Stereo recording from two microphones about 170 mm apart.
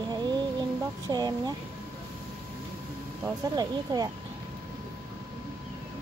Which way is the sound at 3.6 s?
20° right (ahead or behind).